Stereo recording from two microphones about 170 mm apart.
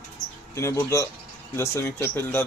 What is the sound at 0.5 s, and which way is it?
Speech, 15° left (ahead or behind).